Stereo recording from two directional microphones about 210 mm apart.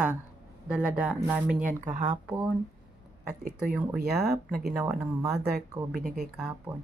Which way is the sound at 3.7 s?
5° right (ahead or behind).